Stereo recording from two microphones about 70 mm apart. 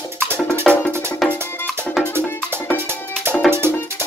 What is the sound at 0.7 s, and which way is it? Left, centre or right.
Music, centre.